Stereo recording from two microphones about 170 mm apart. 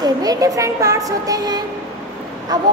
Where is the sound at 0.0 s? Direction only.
20° right (ahead or behind).